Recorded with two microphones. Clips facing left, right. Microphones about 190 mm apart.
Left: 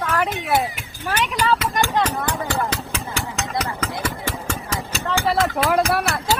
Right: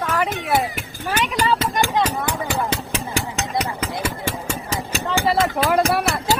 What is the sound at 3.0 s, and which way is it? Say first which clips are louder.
Engine: right 3 dB; 15° right (ahead or behind).